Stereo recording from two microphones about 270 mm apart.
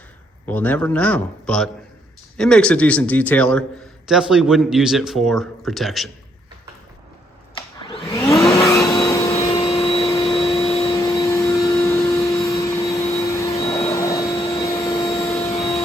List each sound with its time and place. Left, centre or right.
0.4 s speech: centre
7.5 s vacuum cleaner: centre
8.4 s vehicle: centre
13.9 s vacuum cleaner: centre